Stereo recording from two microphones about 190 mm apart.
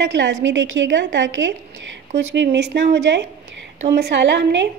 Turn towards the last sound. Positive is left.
turn(degrees=-65)  # may be behind; listen again after turning